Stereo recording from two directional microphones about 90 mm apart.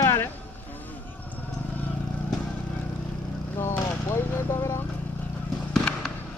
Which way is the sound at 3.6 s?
30° left (ahead or behind).